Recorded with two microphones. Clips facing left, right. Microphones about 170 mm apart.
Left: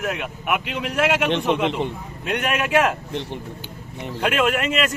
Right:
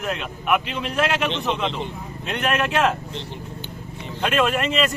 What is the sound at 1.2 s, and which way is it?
Speech, 55° left (ahead or behind).